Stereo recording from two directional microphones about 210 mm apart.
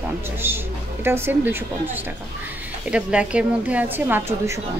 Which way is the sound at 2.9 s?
5° right (ahead or behind).